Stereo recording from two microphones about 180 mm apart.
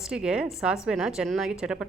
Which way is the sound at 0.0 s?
5° right (ahead or behind).